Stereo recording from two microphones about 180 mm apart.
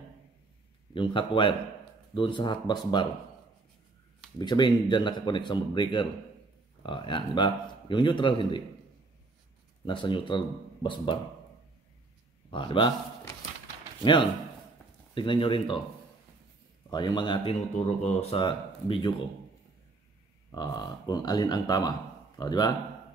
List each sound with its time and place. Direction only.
0.9 s a man's voice: 25° left (ahead or behind)
4.4 s a man's voice: 25° left (ahead or behind)
9.8 s a man's voice: 25° left (ahead or behind)
12.4 s a man's voice: 30° left (ahead or behind)
15.1 s a man's voice: 30° left (ahead or behind)
16.9 s a man's voice: 25° left (ahead or behind)
17.7 s a man's voice: 40° left (ahead or behind)
20.5 s a man's voice: 20° left (ahead or behind)